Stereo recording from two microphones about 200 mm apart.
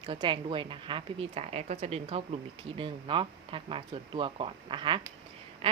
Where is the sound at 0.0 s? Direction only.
25° right (ahead or behind).